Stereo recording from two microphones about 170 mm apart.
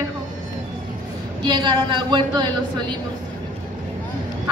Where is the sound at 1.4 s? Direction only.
25° right (ahead or behind).